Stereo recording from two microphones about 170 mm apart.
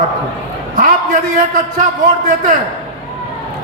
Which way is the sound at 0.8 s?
50° right (ahead or behind).